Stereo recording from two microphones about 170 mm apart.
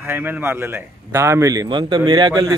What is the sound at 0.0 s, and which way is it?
A man's voice, 10° right (ahead or behind).